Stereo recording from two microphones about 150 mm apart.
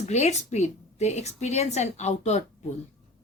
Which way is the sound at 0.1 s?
50° left (ahead or behind).